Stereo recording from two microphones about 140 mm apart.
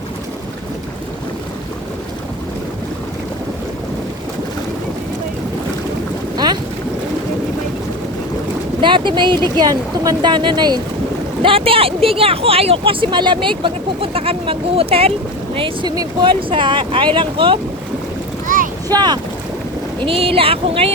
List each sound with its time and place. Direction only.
6.3 s boat: 30° right (ahead or behind)
8.8 s speech: 35° right (ahead or behind)
11.4 s speech: 40° right (ahead or behind)
18.4 s boat: 70° right (ahead or behind)
18.9 s speech: 30° right (ahead or behind)
20.1 s speech: 40° right (ahead or behind)